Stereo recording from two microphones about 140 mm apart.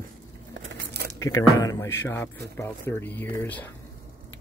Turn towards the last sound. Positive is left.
turn(degrees=15)  # may be behind; listen again after turning